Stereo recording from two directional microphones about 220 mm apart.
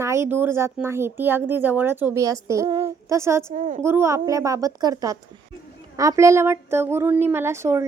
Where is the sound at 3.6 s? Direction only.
35° right (ahead or behind).